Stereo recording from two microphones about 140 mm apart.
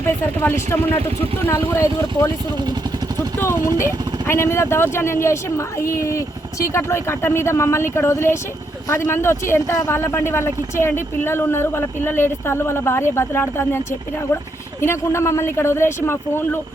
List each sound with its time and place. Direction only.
0.0 s speech: 15° left (ahead or behind)
3.3 s speech: 15° left (ahead or behind)